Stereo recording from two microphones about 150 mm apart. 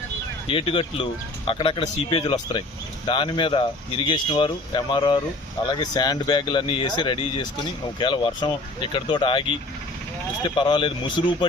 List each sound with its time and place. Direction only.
0.4 s speech: 35° left (ahead or behind)
10.4 s speech: 35° left (ahead or behind)